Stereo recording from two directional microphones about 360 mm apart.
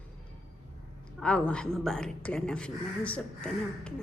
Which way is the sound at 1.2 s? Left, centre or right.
Centre.